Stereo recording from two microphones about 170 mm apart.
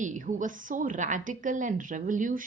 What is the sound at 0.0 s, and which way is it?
A woman's voice, 45° right (ahead or behind).